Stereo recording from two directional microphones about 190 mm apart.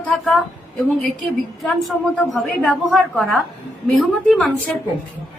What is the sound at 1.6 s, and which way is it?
A woman's voice, centre (ahead or behind).